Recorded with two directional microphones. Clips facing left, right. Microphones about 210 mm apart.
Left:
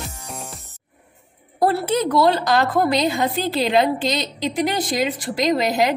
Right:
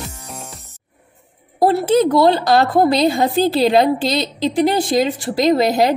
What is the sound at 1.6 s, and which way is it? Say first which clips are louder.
A woman's voice: right 6 dB; 25° right (ahead or behind).